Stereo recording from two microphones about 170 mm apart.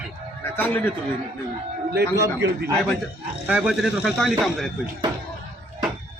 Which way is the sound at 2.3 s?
85° right.